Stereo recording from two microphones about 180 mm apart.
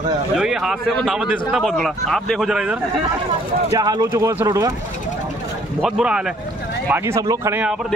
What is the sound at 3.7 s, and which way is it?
Speech, 20° right (ahead or behind).